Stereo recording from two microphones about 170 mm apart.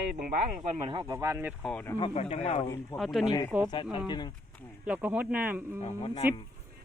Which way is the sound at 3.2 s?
20° left (ahead or behind).